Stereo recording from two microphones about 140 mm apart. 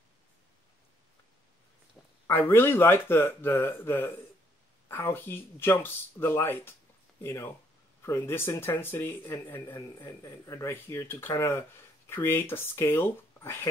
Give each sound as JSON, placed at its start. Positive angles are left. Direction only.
{"t": 2.2, "sound": "speech", "side_deg": 15}